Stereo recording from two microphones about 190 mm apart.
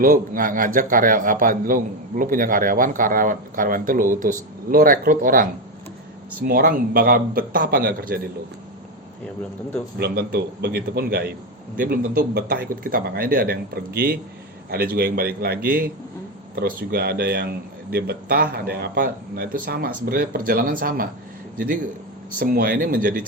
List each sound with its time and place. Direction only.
0.0 s a man's voice: 45° right (ahead or behind)
10.0 s a man's voice: 55° right (ahead or behind)
22.4 s a man's voice: 50° right (ahead or behind)